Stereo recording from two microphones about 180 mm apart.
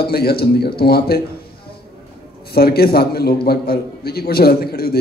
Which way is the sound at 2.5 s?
60° left (ahead or behind).